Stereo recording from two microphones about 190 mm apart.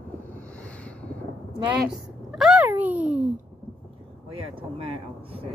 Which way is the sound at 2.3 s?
5° right (ahead or behind).